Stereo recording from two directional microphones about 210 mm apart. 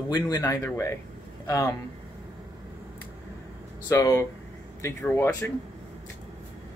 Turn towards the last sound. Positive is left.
turn(degrees=10)  # may be behind; listen again after turning